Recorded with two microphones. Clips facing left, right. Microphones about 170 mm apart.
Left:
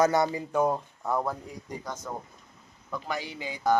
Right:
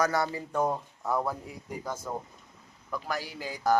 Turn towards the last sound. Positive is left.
turn(degrees=-5)  # may be behind; listen again after turning